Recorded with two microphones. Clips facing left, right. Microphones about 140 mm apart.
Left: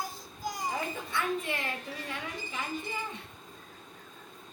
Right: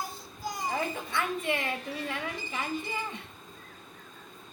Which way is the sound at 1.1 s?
65° right (ahead or behind).